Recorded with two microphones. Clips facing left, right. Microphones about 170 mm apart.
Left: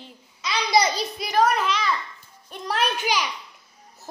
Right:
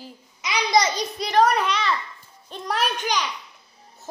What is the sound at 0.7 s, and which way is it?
A child's voice, 10° left (ahead or behind).